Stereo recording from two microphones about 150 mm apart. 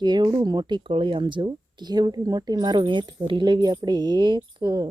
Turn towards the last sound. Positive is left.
turn(degrees=-30)  # may be behind; listen again after turning